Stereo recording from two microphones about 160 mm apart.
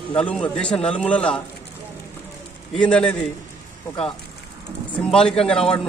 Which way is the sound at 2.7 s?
5° left (ahead or behind).